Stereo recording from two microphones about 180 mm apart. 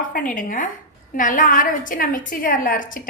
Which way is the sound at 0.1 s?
50° left (ahead or behind).